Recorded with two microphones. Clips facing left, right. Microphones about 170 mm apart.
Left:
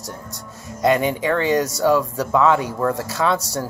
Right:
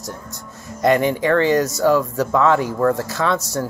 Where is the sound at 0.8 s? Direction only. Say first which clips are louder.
Right 2 dB; 15° left (ahead or behind).